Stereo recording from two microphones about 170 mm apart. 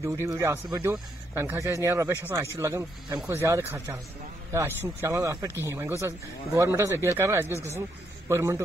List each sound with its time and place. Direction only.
0.0 s speech: 15° right (ahead or behind)